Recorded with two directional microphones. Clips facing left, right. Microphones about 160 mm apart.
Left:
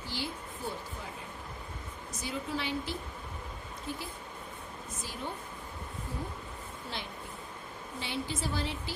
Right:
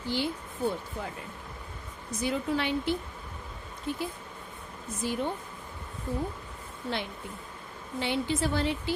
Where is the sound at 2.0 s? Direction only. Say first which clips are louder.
Right 8 dB; 60° right (ahead or behind).